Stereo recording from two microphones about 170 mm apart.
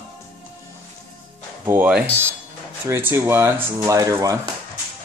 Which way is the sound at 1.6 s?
10° right (ahead or behind).